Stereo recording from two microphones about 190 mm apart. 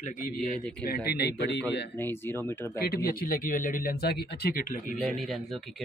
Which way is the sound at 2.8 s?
50° left (ahead or behind).